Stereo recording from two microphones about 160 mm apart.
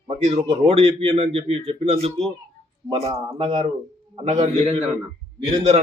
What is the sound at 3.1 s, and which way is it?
Speech, 30° right (ahead or behind).